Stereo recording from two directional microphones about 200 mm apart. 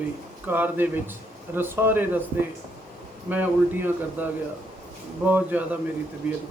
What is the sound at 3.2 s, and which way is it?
A man's voice, 10° right (ahead or behind).